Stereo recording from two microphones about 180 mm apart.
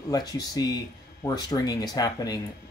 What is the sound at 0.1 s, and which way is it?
Speech, 20° left (ahead or behind).